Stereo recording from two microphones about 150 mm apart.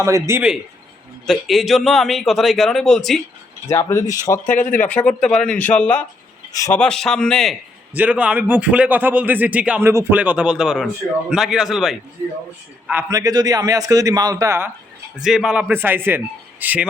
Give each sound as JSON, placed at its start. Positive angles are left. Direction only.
{"t": 0.0, "sound": "a man's voice", "side_deg": -20}
{"t": 1.3, "sound": "a man's voice", "side_deg": 0}
{"t": 3.7, "sound": "speech", "side_deg": 20}
{"t": 4.4, "sound": "speech", "side_deg": 60}
{"t": 4.7, "sound": "a man's voice", "side_deg": 10}
{"t": 6.5, "sound": "speech", "side_deg": 20}
{"t": 6.7, "sound": "a man's voice", "side_deg": 5}
{"t": 7.9, "sound": "a man's voice", "side_deg": -10}
{"t": 12.9, "sound": "a man's voice", "side_deg": -20}
{"t": 15.2, "sound": "speech", "side_deg": -5}